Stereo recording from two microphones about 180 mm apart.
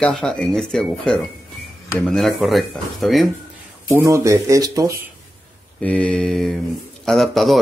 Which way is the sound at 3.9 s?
15° right (ahead or behind).